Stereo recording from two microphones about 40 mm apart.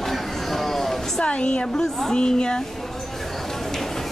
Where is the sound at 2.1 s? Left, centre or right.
Left.